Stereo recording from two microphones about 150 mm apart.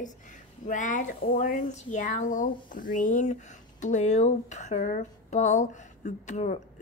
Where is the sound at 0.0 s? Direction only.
60° left (ahead or behind).